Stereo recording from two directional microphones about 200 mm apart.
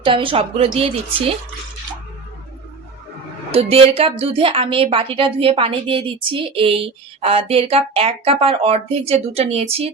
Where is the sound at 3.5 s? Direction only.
30° right (ahead or behind).